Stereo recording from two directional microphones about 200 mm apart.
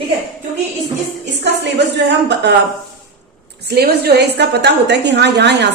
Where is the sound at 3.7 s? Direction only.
55° right (ahead or behind).